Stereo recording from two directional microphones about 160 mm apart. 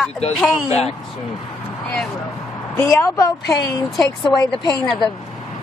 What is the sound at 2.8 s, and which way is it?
A woman's voice, 15° left (ahead or behind).